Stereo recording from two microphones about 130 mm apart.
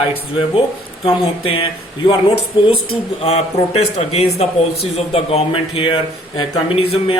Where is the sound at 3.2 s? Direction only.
55° left (ahead or behind).